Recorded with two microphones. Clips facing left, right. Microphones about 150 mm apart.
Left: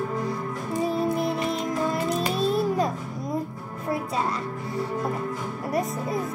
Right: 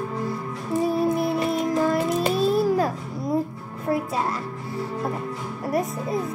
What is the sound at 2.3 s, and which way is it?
Music, centre (ahead or behind).